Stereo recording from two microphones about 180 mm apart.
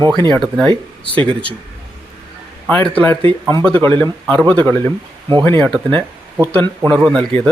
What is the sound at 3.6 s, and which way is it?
Speech, 10° left (ahead or behind).